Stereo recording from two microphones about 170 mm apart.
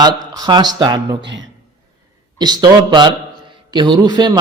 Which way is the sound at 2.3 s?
25° right (ahead or behind).